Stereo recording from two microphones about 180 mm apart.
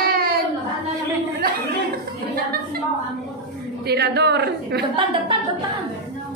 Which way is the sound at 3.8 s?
65° right (ahead or behind).